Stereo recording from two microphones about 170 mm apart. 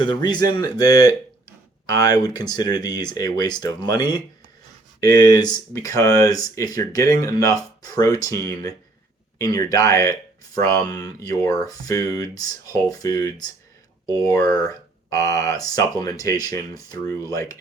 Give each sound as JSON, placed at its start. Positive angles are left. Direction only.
{"t": 0.0, "sound": "speech", "side_deg": 25}